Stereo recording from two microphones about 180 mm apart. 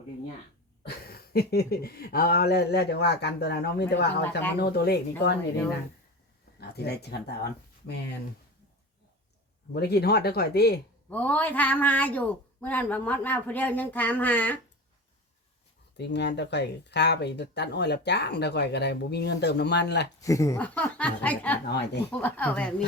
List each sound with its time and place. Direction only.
0.8 s speech: 60° left (ahead or behind)
6.6 s speech: 65° left (ahead or behind)
9.7 s speech: 65° left (ahead or behind)
11.1 s speech: 5° left (ahead or behind)
16.0 s speech: 70° left (ahead or behind)
20.2 s speech: 20° left (ahead or behind)
21.7 s speech: 70° left (ahead or behind)
22.1 s speech: 10° left (ahead or behind)